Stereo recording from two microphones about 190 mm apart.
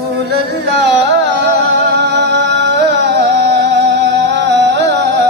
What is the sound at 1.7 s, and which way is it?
Music, 60° right (ahead or behind).